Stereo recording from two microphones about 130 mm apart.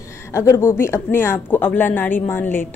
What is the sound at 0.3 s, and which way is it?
Speech, 20° left (ahead or behind).